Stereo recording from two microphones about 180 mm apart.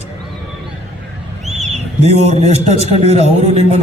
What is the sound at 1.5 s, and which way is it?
Bird, 40° right (ahead or behind).